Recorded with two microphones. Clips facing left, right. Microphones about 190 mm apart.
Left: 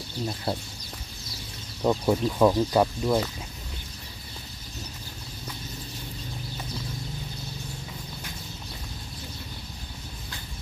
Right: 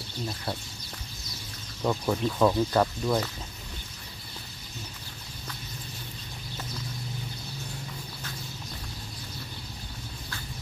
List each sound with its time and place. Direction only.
0.5 s speech: 25° left (ahead or behind)
1.8 s speech: 15° left (ahead or behind)